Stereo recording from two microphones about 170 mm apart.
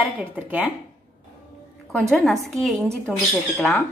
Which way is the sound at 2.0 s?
Centre (ahead or behind).